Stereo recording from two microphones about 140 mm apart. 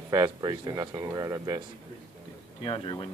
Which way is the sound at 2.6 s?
40° left (ahead or behind).